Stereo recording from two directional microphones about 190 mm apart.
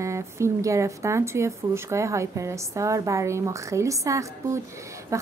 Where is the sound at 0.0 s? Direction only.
15° right (ahead or behind).